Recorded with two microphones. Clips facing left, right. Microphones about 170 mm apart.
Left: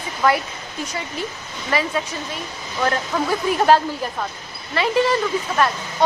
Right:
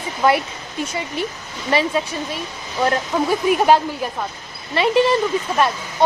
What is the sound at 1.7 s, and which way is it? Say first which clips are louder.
Speech: right 3 dB; 25° right (ahead or behind).